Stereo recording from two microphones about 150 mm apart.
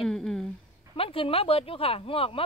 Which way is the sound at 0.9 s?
35° left (ahead or behind).